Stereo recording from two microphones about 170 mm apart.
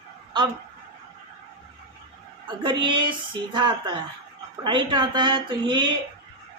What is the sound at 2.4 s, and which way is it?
A woman's voice, 25° right (ahead or behind).